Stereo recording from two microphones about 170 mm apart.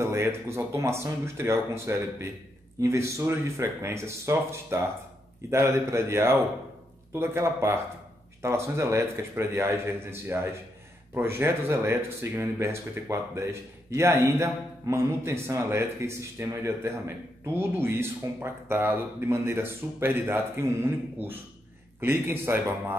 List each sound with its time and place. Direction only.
0.0 s speech: 15° right (ahead or behind)